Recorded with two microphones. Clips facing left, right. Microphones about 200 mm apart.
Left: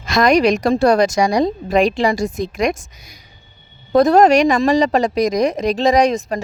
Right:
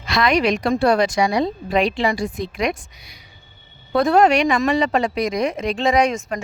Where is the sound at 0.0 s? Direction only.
45° left (ahead or behind).